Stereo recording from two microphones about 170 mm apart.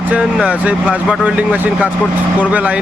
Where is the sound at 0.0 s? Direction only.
5° right (ahead or behind).